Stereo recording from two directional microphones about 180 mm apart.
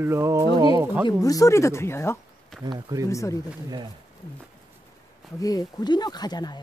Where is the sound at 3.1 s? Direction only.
15° left (ahead or behind).